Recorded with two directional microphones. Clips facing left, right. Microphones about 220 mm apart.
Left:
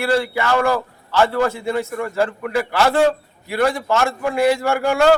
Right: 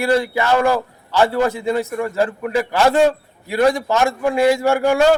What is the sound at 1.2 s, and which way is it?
A man's voice, 15° right (ahead or behind).